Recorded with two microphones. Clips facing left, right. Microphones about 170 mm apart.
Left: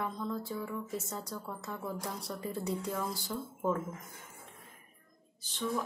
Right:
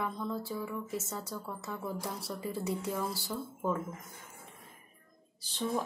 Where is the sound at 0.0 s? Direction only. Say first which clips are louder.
Right 1 dB; 5° right (ahead or behind).